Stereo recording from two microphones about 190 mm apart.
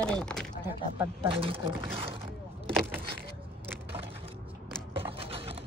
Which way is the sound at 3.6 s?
10° right (ahead or behind).